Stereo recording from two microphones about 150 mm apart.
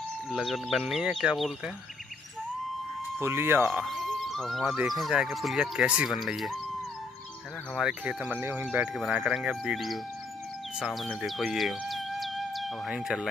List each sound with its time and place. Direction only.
0.3 s speech: centre (ahead or behind)
3.2 s speech: 15° right (ahead or behind)
3.8 s speech: centre (ahead or behind)
7.7 s speech: 5° right (ahead or behind)
8.9 s speech: centre (ahead or behind)